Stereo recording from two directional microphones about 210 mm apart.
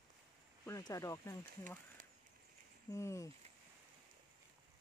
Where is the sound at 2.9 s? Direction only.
15° left (ahead or behind).